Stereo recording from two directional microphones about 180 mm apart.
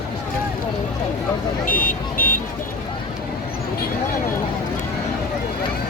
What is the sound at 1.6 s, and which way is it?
Car alarm, 50° left (ahead or behind).